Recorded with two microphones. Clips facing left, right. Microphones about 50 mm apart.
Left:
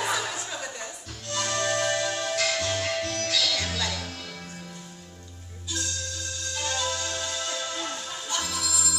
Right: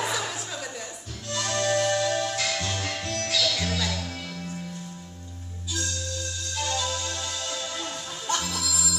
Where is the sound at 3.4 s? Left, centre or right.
Centre.